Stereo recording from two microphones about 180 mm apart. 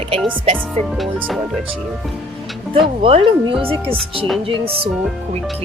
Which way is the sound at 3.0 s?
30° right (ahead or behind).